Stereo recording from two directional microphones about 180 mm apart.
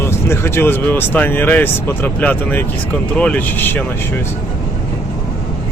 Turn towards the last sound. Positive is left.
turn(degrees=10)  # may be behind; listen again after turning